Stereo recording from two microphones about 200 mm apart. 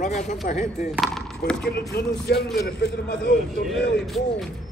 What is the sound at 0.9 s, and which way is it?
Speech, centre (ahead or behind).